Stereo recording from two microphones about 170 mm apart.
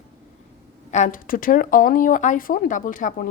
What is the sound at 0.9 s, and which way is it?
Speech, 50° left (ahead or behind).